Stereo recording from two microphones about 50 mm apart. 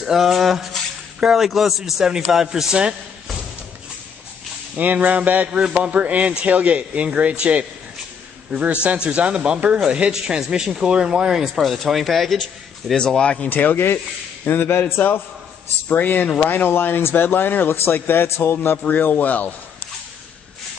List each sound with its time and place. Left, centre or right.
0.0 s speech: centre
4.7 s a man's voice: right; by 11.3 s centre
11.3 s speech: centre
12.9 s speech: centre
13.5 s speech: left
14.4 s speech: left
18.9 s speech: left